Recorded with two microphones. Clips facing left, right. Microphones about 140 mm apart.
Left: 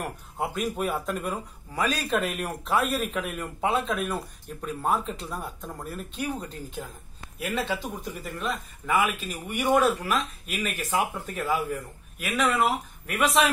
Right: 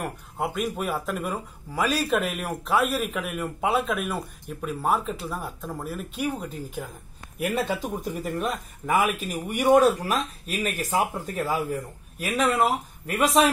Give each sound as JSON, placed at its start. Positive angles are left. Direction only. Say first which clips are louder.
{"t": 0.0, "sound": "speech", "louder": "right 2 dB", "side_deg": 0}
{"t": 7.4, "sound": "speech", "louder": "right 3 dB", "side_deg": -45}